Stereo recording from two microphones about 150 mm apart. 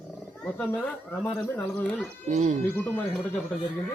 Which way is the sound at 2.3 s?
50° right (ahead or behind).